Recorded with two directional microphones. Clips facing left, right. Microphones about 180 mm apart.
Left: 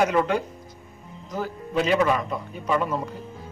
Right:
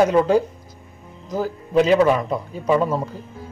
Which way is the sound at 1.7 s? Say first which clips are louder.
Right 6 dB; 30° right (ahead or behind).